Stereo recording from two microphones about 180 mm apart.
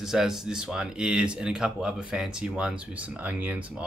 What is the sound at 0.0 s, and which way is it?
Speech, centre (ahead or behind).